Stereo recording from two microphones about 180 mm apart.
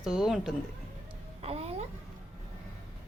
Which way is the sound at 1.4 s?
35° right (ahead or behind).